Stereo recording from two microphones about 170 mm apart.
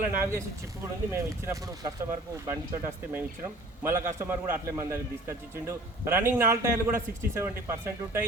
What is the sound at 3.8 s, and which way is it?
Speech, 15° right (ahead or behind).